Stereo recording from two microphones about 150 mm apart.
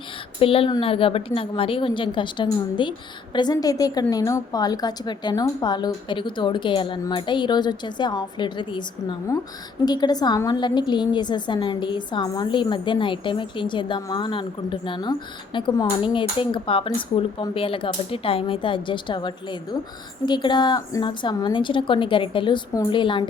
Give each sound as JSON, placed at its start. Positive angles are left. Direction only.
{"t": 0.3, "sound": "a woman's voice", "side_deg": 35}